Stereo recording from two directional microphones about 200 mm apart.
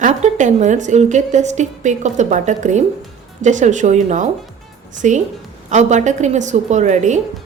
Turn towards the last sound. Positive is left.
turn(degrees=-35)  # may be behind; listen again after turning